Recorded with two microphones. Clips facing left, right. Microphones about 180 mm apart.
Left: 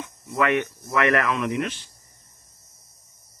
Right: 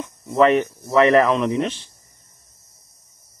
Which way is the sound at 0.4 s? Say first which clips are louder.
Right 7 dB; 30° right (ahead or behind).